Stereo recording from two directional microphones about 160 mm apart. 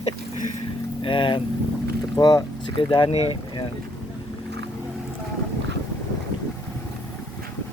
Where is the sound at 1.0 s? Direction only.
30° left (ahead or behind).